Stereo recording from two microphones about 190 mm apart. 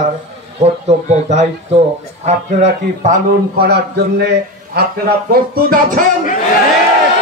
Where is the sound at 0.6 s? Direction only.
35° right (ahead or behind).